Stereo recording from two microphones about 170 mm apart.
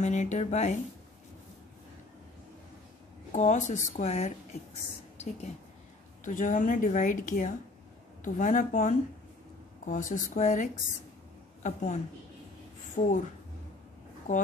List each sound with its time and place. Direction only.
0.0 s a woman's voice: 45° left (ahead or behind)
3.3 s a woman's voice: 45° left (ahead or behind)
14.3 s a woman's voice: 50° left (ahead or behind)